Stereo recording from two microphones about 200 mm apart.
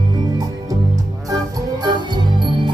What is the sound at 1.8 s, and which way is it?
Music, 20° right (ahead or behind).